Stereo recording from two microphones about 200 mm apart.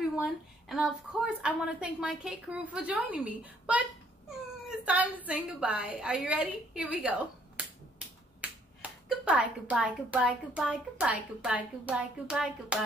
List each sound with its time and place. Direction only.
0.2 s a woman's voice: centre (ahead or behind)
8.4 s finger snapping: 5° right (ahead or behind)
8.8 s a sound: 5° right (ahead or behind)
9.2 s a woman's voice: 5° right (ahead or behind)